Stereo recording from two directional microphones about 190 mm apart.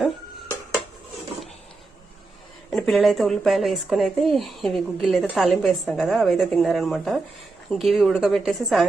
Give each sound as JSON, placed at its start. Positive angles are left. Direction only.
{"t": 2.6, "sound": "a woman's voice", "side_deg": 0}